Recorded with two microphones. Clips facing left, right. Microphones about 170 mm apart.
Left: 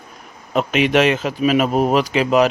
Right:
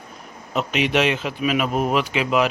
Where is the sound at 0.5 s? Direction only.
50° left (ahead or behind).